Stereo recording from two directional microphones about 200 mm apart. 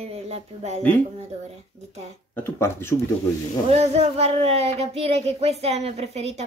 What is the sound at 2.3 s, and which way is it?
Speech, 10° left (ahead or behind).